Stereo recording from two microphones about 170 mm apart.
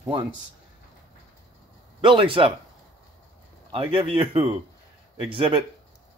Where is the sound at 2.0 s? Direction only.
30° right (ahead or behind).